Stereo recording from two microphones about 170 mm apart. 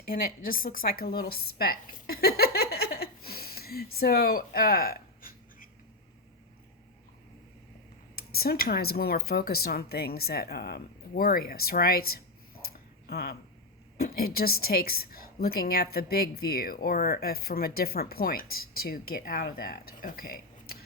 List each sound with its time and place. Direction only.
0.0 s a woman's voice: 55° left (ahead or behind)
8.1 s a woman's voice: 65° left (ahead or behind)
12.7 s a sound: 65° left (ahead or behind)
14.0 s a woman's voice: 60° left (ahead or behind)